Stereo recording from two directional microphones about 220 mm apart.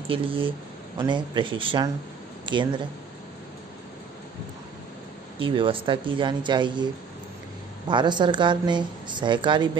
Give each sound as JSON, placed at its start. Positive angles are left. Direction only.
{"t": 0.1, "sound": "a woman's voice", "side_deg": -25}
{"t": 5.4, "sound": "a woman's voice", "side_deg": -25}
{"t": 7.9, "sound": "a woman's voice", "side_deg": -20}